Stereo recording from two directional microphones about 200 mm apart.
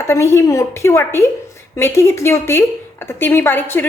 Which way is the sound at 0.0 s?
15° left (ahead or behind).